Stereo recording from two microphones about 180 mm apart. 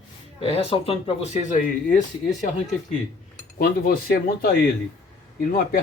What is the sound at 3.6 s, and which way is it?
Speech, 55° left (ahead or behind).